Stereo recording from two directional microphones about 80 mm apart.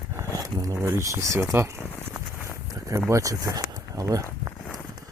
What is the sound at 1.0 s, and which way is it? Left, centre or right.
Speech, right.